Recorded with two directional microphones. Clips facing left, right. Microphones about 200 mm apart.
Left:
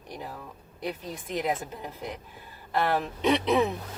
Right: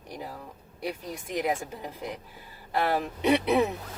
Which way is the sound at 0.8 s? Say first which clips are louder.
Even; 10° right (ahead or behind).